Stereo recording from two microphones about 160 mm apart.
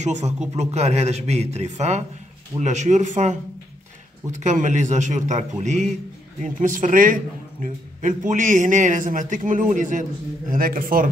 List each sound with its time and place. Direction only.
0.0 s a man's voice: 45° right (ahead or behind)